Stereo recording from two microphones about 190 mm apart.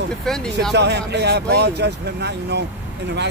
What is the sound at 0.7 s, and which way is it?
Speech, 60° right (ahead or behind).